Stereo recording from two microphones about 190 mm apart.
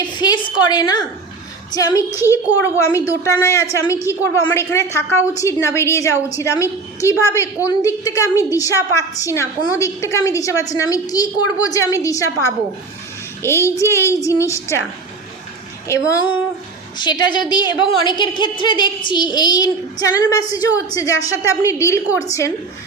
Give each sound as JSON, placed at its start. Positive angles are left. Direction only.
{"t": 0.0, "sound": "a woman's voice", "side_deg": 25}
{"t": 15.9, "sound": "a woman's voice", "side_deg": 15}